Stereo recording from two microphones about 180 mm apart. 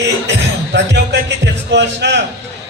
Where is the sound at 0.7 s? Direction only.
75° right (ahead or behind).